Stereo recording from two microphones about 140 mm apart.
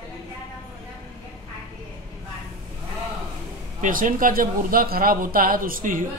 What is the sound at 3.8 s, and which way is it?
Speech, 75° right (ahead or behind).